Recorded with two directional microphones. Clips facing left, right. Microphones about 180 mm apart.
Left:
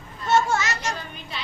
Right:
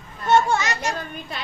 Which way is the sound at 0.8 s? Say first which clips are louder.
Right 3 dB; 55° right (ahead or behind).